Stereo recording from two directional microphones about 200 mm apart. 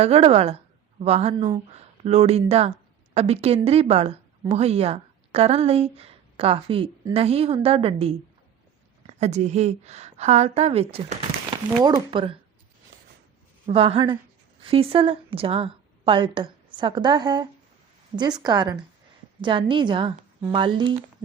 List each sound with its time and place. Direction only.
0.0 s a woman's voice: 30° right (ahead or behind)
11.8 s speech: 20° right (ahead or behind)
13.7 s a woman's voice: 30° right (ahead or behind)